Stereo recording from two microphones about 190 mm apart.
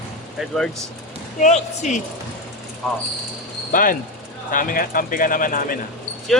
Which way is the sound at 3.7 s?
45° left (ahead or behind).